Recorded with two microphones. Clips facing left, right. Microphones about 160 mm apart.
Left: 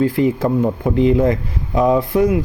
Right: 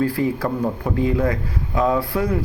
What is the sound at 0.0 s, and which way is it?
Speech, 20° left (ahead or behind).